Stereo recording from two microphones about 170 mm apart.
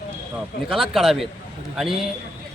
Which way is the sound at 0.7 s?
Centre (ahead or behind).